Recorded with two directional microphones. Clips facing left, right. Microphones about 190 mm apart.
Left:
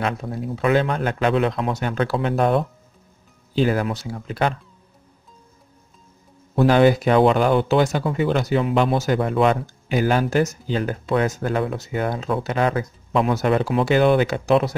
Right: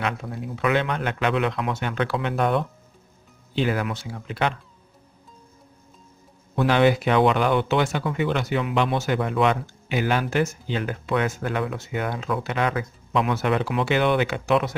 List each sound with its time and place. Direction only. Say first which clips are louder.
0.0 s speech: left 3 dB; 35° left (ahead or behind)
6.5 s speech: left 4 dB; 35° left (ahead or behind)